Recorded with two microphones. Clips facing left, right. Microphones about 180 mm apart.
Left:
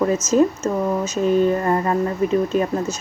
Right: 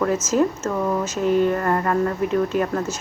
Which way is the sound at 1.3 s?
20° left (ahead or behind).